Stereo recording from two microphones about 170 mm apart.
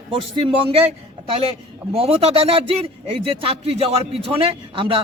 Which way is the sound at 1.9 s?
35° right (ahead or behind).